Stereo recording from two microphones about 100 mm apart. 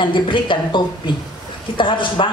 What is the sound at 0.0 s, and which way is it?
A woman's voice, 55° left (ahead or behind).